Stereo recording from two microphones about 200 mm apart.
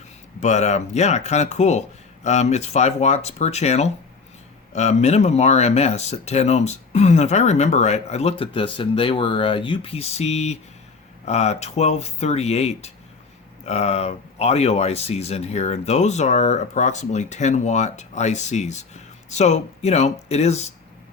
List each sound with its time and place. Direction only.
0.3 s speech: 35° left (ahead or behind)